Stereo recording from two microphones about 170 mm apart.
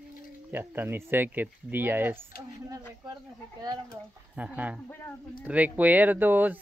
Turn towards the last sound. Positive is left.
turn(degrees=-10)  # may be behind; listen again after turning